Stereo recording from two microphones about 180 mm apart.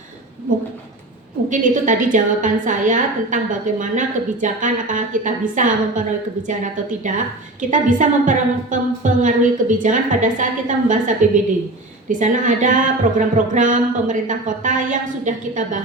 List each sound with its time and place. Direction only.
1.5 s a woman's voice: 45° right (ahead or behind)